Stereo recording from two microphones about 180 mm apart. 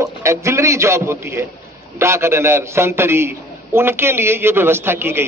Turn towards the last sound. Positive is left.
turn(degrees=-15)  # may be behind; listen again after turning